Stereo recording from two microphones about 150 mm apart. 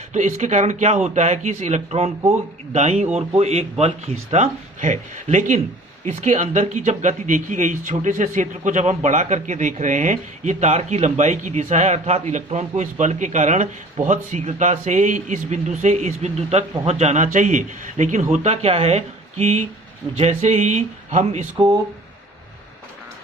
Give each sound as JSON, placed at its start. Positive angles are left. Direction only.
{"t": 0.1, "sound": "speech", "side_deg": -55}